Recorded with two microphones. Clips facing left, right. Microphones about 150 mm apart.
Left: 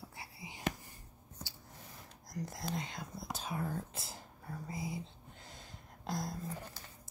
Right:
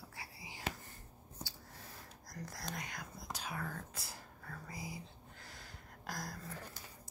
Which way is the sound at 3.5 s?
25° left (ahead or behind).